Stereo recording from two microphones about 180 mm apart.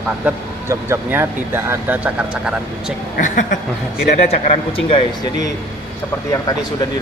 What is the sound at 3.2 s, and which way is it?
A woman's voice, 45° left (ahead or behind).